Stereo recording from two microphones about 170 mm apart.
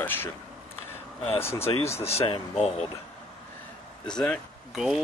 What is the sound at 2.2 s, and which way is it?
Speech, 35° left (ahead or behind).